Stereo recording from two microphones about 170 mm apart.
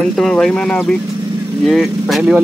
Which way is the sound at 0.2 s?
5° left (ahead or behind).